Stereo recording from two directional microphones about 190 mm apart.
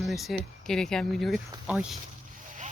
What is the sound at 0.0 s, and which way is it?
Speech, centre (ahead or behind).